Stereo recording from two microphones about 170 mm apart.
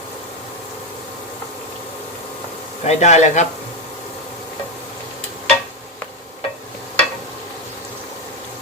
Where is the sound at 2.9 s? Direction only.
40° left (ahead or behind).